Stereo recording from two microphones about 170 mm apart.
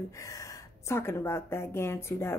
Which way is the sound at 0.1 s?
20° left (ahead or behind).